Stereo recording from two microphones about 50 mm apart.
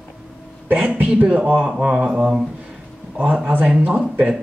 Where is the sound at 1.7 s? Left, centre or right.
Centre.